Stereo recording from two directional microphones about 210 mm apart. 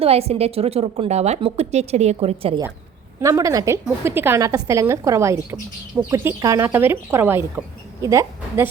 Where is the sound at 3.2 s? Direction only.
15° right (ahead or behind).